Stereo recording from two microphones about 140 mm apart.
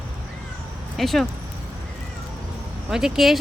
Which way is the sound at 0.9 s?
Centre (ahead or behind).